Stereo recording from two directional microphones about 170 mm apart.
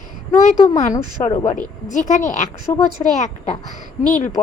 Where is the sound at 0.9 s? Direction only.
20° left (ahead or behind).